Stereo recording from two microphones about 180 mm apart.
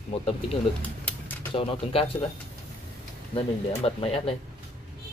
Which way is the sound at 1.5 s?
30° left (ahead or behind).